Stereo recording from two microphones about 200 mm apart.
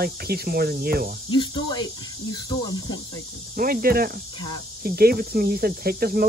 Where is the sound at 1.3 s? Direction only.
20° left (ahead or behind).